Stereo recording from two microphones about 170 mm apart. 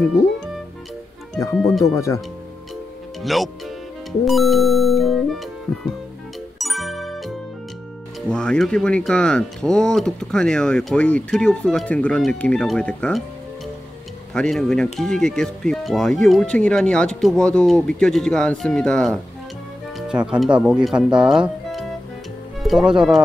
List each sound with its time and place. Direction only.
1.6 s speech: centre (ahead or behind)
2.0 s speech: 20° left (ahead or behind)
3.2 s speech: centre (ahead or behind)
6.6 s music: centre (ahead or behind)
8.3 s speech: 5° left (ahead or behind)
14.3 s speech: 5° left (ahead or behind)
21.2 s music: 5° right (ahead or behind)